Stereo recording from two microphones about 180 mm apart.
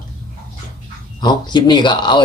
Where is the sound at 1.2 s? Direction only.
25° left (ahead or behind).